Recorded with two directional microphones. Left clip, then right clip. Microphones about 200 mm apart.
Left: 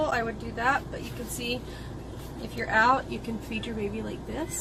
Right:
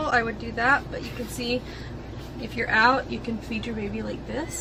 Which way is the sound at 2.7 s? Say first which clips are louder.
Right 2 dB; 10° right (ahead or behind).